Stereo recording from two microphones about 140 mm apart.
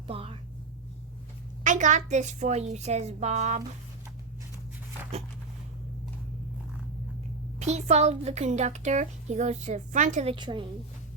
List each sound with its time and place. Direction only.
0.1 s speech: 45° right (ahead or behind)
1.6 s speech: 65° right (ahead or behind)
7.6 s speech: 50° right (ahead or behind)
10.2 s a woman's voice: 35° right (ahead or behind)